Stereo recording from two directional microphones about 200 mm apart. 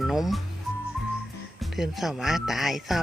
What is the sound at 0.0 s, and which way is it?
Speech, centre (ahead or behind).